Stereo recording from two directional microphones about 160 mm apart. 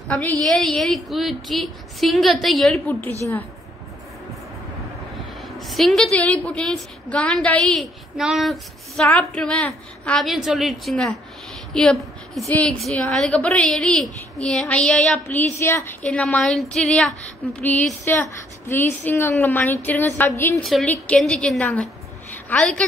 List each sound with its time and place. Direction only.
0.5 s a woman's voice: centre (ahead or behind)
5.1 s a sound: centre (ahead or behind)
6.1 s a woman's voice: 5° left (ahead or behind)
20.6 s a woman's voice: centre (ahead or behind)